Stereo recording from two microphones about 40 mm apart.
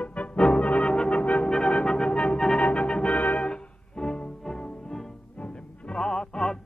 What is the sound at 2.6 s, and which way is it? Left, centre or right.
Organ, left.